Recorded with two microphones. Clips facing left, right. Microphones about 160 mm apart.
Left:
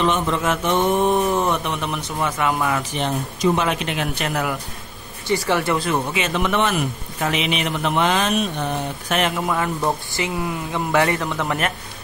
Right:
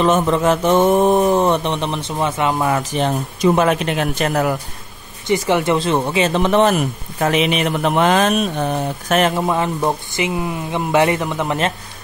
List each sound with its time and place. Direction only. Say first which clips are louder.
0.0 s speech: right 5 dB; 40° right (ahead or behind)
5.2 s speech: right 4 dB; 20° right (ahead or behind); by 9.4 s 40° right (ahead or behind)
9.8 s speech: right 3 dB; 20° right (ahead or behind)